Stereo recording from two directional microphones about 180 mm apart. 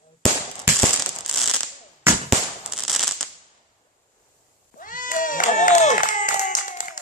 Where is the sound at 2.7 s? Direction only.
Centre (ahead or behind).